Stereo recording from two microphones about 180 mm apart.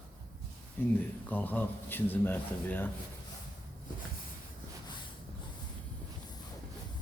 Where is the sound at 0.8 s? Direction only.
10° left (ahead or behind).